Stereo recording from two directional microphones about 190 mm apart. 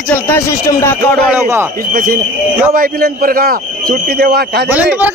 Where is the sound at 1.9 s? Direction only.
50° right (ahead or behind).